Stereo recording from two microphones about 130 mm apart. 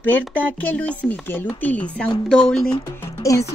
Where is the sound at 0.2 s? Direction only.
15° left (ahead or behind).